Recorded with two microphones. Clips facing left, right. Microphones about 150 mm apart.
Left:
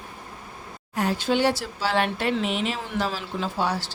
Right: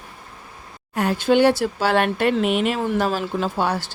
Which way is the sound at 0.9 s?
60° right (ahead or behind).